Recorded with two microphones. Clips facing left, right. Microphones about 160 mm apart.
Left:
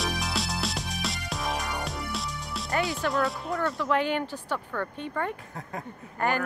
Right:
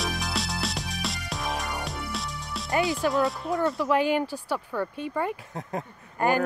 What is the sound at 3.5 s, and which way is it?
Music, 15° right (ahead or behind).